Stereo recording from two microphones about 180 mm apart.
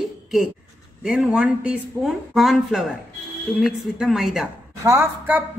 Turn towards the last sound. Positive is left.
turn(degrees=-15)  # may be behind; listen again after turning